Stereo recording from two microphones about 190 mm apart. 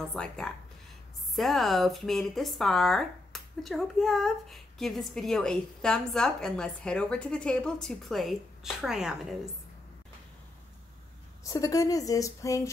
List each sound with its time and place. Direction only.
0.1 s speech: 5° left (ahead or behind)
11.4 s speech: 20° left (ahead or behind)